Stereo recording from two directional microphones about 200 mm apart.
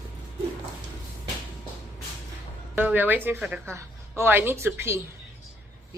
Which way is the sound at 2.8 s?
10° right (ahead or behind).